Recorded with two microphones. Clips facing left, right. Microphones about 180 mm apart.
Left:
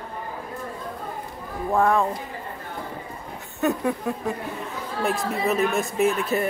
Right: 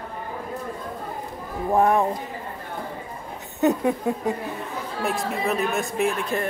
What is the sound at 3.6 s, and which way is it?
Speech, 20° right (ahead or behind).